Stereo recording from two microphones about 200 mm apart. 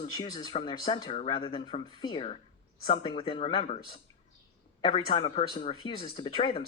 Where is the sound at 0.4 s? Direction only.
25° left (ahead or behind).